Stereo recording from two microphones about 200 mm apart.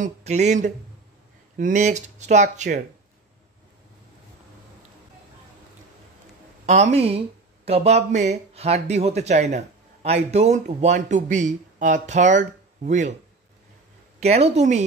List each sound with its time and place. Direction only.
0.0 s speech: 35° right (ahead or behind)
6.6 s speech: 35° right (ahead or behind)
14.2 s speech: 30° right (ahead or behind)